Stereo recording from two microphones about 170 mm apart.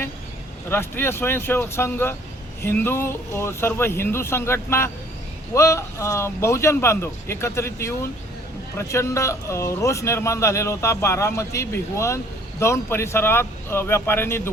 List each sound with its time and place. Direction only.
0.7 s speech: 15° left (ahead or behind)